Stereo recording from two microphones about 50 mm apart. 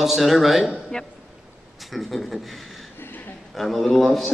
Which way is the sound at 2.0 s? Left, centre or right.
Left.